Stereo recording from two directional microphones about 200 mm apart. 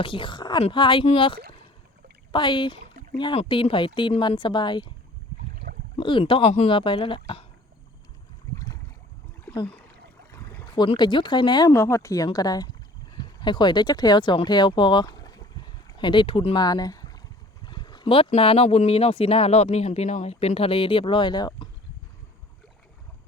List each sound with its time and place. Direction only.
0.0 s speech: 25° left (ahead or behind)
6.0 s speech: 25° left (ahead or behind)
8.5 s boat: 15° left (ahead or behind)
10.3 s a sound: 15° left (ahead or behind)
10.8 s speech: 20° left (ahead or behind)